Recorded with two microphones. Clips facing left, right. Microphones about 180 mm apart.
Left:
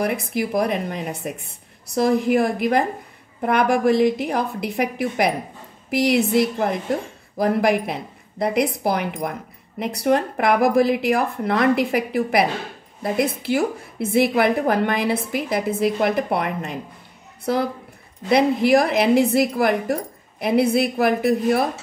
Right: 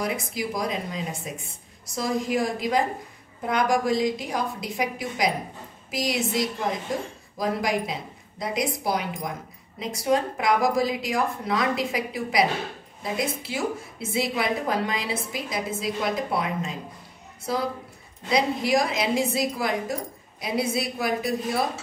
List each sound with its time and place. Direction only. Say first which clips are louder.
0.0 s a woman's voice: left 6 dB; 60° left (ahead or behind)
18.3 s a woman's voice: left 7 dB; 60° left (ahead or behind)